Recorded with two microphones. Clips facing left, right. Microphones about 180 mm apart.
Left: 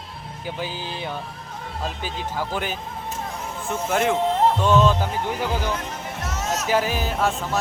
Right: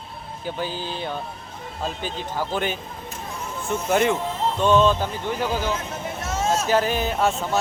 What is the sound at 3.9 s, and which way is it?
Speech, centre (ahead or behind).